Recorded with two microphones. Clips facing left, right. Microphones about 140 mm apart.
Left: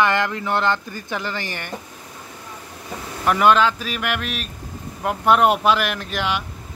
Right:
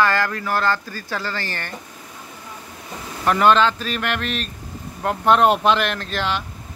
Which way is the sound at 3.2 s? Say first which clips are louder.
Even; 5° left (ahead or behind).